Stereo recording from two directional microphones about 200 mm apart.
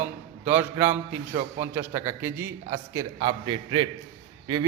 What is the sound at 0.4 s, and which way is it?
A man's voice, 10° right (ahead or behind).